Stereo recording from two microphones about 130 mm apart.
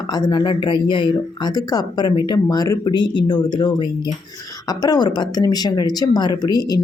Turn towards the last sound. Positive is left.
turn(degrees=30)  # may be behind; listen again after turning